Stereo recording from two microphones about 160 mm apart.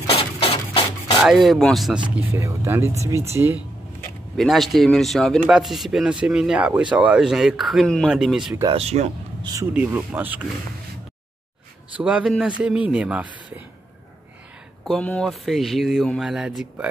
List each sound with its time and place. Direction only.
0.1 s a sound: 40° left (ahead or behind)
1.2 s speech: centre (ahead or behind)
2.1 s a man's voice: 15° right (ahead or behind)
4.4 s speech: centre (ahead or behind)
8.7 s speech: 40° right (ahead or behind)
9.4 s speech: 25° right (ahead or behind)
9.8 s a man's voice: 10° right (ahead or behind)
11.9 s a man's voice: 5° right (ahead or behind)
14.9 s speech: 5° left (ahead or behind)